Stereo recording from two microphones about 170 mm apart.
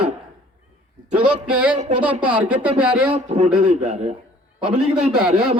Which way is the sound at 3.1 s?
40° right (ahead or behind).